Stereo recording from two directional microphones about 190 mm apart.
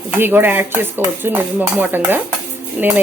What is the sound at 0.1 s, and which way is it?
A woman's voice, 10° right (ahead or behind).